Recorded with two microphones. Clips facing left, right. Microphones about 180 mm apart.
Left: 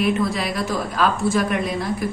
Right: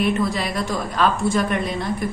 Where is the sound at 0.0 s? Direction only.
Centre (ahead or behind).